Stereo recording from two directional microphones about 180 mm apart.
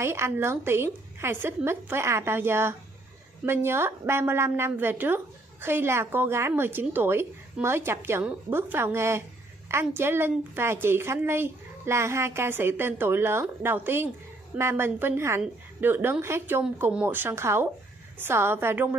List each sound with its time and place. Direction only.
0.0 s a woman's voice: 15° right (ahead or behind)